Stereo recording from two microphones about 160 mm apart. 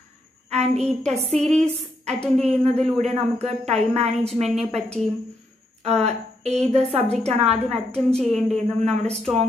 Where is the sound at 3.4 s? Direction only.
45° right (ahead or behind).